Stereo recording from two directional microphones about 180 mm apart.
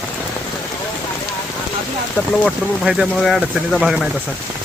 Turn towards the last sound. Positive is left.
turn(degrees=0)  # may be behind; listen again after turning